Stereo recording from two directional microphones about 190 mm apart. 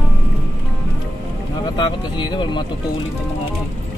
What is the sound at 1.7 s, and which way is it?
Speech, 25° left (ahead or behind).